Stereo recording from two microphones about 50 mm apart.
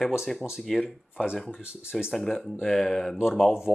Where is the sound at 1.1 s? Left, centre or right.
Centre.